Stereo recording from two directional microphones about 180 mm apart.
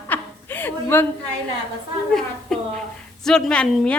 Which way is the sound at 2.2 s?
5° left (ahead or behind).